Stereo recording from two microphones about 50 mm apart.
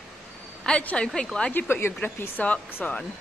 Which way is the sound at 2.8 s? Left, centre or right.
Left.